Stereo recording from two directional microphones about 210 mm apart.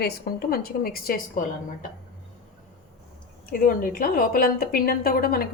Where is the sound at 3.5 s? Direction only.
45° left (ahead or behind).